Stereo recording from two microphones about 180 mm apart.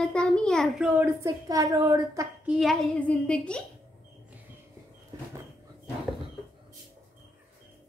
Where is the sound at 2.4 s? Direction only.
Centre (ahead or behind).